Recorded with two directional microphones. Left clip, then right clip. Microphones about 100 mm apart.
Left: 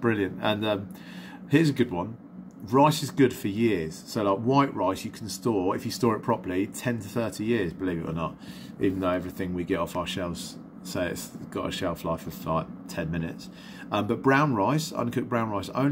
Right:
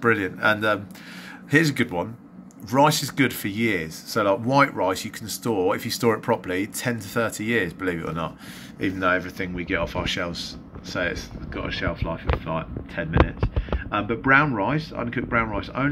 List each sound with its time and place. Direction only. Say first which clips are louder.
0.0 s speech: right 6 dB; 20° left (ahead or behind)
1.5 s speech: right 3 dB; 10° left (ahead or behind)
8.8 s speech: right 4 dB; 20° left (ahead or behind)
10.0 s speech: right 6 dB; 20° left (ahead or behind)
11.5 s speech: right 2 dB; 45° left (ahead or behind)
13.8 s speech: right 3 dB; 50° left (ahead or behind)